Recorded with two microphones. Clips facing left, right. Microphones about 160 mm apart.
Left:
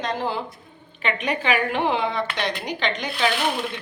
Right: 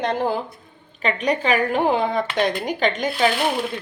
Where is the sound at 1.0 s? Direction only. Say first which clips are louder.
Right 3 dB; 35° right (ahead or behind).